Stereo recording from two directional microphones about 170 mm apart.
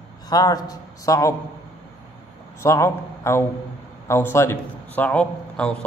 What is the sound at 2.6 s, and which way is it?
A man's voice, 15° left (ahead or behind).